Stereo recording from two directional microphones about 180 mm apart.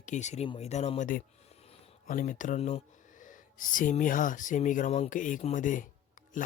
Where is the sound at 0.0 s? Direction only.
40° left (ahead or behind).